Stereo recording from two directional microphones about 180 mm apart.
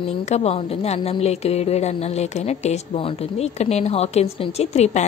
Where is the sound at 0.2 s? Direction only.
40° left (ahead or behind).